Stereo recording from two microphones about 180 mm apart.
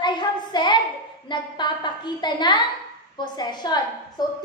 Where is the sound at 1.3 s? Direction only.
25° left (ahead or behind).